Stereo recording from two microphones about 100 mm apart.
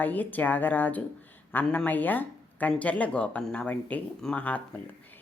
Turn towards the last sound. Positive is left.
turn(degrees=15)  # may be behind; listen again after turning